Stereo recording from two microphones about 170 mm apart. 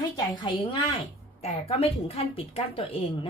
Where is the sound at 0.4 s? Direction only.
30° left (ahead or behind).